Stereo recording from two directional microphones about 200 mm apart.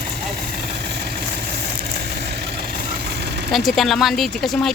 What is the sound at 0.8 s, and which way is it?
Vehicle, 50° right (ahead or behind).